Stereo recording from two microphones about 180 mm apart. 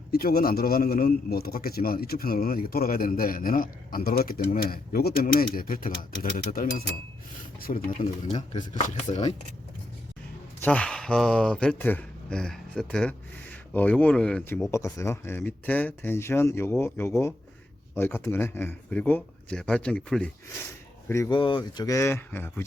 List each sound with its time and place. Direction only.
0.1 s a man's voice: 55° left (ahead or behind)
7.9 s speech: 40° left (ahead or behind)
10.6 s speech: 5° left (ahead or behind)
14.7 s speech: 15° left (ahead or behind)
21.1 s speech: 15° left (ahead or behind)
21.3 s speech: 25° left (ahead or behind); by 22.6 s 10° left (ahead or behind)